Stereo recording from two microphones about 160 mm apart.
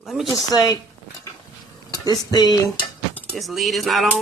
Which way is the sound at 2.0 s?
25° left (ahead or behind).